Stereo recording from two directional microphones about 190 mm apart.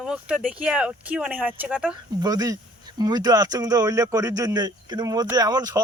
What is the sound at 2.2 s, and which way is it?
Speech, 20° right (ahead or behind).